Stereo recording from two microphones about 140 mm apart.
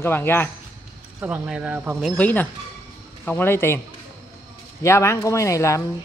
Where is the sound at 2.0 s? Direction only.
10° left (ahead or behind).